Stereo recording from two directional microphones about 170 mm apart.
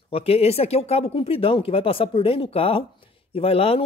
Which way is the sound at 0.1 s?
35° left (ahead or behind).